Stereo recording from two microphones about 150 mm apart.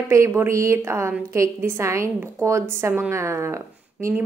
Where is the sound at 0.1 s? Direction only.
20° right (ahead or behind).